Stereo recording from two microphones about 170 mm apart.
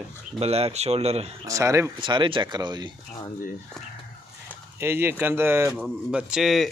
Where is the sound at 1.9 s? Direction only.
30° right (ahead or behind).